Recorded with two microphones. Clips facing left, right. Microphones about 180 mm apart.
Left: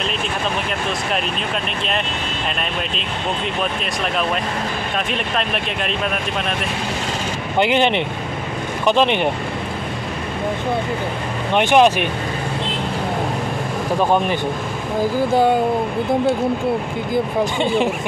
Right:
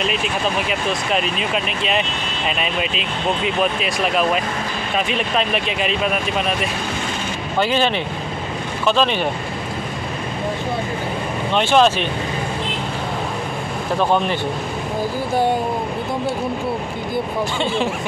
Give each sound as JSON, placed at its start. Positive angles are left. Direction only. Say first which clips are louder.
{"t": 3.4, "sound": "speech", "louder": "right 3 dB", "side_deg": -5}
{"t": 7.5, "sound": "speech", "louder": "left 2 dB", "side_deg": 20}
{"t": 11.5, "sound": "speech", "louder": "left 2 dB", "side_deg": 15}
{"t": 17.6, "sound": "speech", "louder": "left 3 dB", "side_deg": 15}